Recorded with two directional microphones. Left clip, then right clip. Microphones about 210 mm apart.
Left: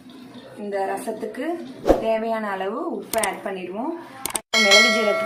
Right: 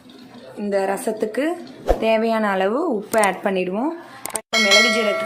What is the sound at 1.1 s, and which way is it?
A woman's voice, 50° right (ahead or behind).